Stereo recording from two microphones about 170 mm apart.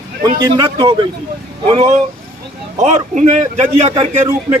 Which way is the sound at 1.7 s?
40° right (ahead or behind).